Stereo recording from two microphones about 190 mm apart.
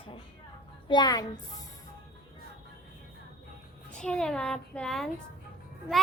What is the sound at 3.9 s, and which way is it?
Speech, 5° left (ahead or behind).